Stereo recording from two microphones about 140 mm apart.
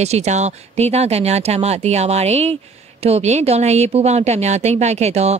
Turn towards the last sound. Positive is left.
turn(degrees=-50)  # may be behind; listen again after turning